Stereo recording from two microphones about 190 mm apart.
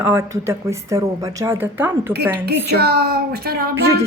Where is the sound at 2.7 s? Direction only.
60° right (ahead or behind).